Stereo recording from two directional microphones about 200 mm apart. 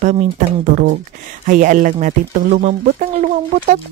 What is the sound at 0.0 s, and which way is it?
Speech, 35° right (ahead or behind).